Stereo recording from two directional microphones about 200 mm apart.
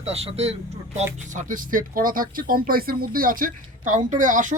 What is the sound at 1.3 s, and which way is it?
Speech, 40° right (ahead or behind).